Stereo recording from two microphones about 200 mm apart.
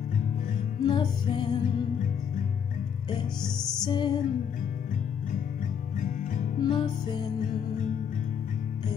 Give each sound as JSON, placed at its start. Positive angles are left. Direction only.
{"t": 0.8, "sound": "music", "side_deg": 25}
{"t": 3.4, "sound": "music", "side_deg": 5}
{"t": 3.8, "sound": "music", "side_deg": 20}
{"t": 5.9, "sound": "music", "side_deg": 40}
{"t": 6.6, "sound": "music", "side_deg": 25}